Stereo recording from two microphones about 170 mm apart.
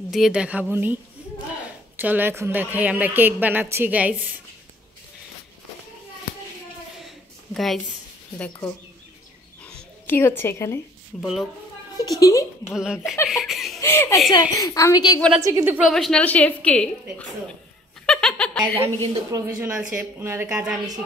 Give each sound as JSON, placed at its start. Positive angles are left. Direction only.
{"t": 0.1, "sound": "speech", "side_deg": -5}
{"t": 2.0, "sound": "speech", "side_deg": -10}
{"t": 7.5, "sound": "a woman's voice", "side_deg": 0}
{"t": 8.4, "sound": "speech", "side_deg": 15}
{"t": 9.7, "sound": "a sound", "side_deg": 10}
{"t": 12.0, "sound": "a woman's voice", "side_deg": 20}
{"t": 12.7, "sound": "a woman's voice", "side_deg": -5}
{"t": 13.3, "sound": "laughter", "side_deg": 0}
{"t": 13.7, "sound": "a woman's voice", "side_deg": 15}
{"t": 15.1, "sound": "a woman's voice", "side_deg": 5}
{"t": 15.4, "sound": "speech", "side_deg": -15}
{"t": 15.8, "sound": "a woman's voice", "side_deg": 0}
{"t": 18.0, "sound": "giggle", "side_deg": 5}
{"t": 19.3, "sound": "speech", "side_deg": -15}